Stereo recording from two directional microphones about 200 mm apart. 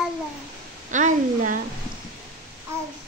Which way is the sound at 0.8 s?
40° right (ahead or behind).